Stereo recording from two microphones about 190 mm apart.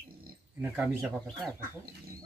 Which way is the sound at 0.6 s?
5° right (ahead or behind).